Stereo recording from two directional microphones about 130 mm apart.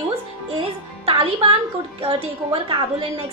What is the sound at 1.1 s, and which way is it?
A woman's voice, 45° right (ahead or behind).